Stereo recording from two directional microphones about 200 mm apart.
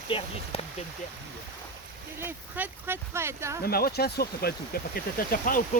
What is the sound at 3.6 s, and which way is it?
Speech, 50° left (ahead or behind).